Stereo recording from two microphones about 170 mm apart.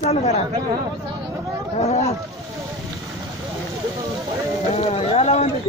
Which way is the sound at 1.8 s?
40° left (ahead or behind).